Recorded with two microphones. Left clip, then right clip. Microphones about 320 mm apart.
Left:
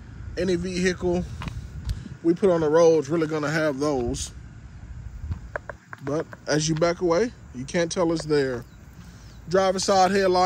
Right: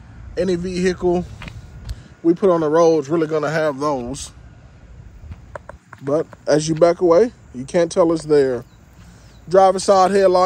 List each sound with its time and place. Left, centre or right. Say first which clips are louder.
0.4 s speech: right 5 dB; centre
5.5 s a sound: left 1 dB; right
6.1 s speech: right 9 dB; centre